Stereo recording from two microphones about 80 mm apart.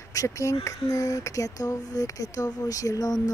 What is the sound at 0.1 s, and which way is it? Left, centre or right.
Speech, left.